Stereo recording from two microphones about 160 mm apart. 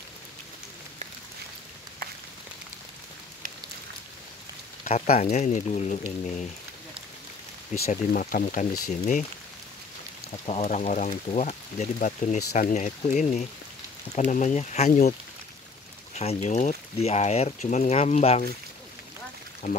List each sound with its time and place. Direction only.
4.8 s speech: 55° left (ahead or behind)
7.9 s speech: 55° left (ahead or behind)
10.4 s speech: 45° left (ahead or behind)
16.2 s speech: 45° left (ahead or behind)